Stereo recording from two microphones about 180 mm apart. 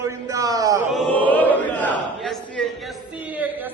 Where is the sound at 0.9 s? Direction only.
5° left (ahead or behind).